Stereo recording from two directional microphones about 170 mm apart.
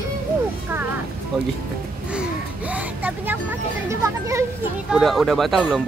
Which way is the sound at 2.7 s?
10° right (ahead or behind).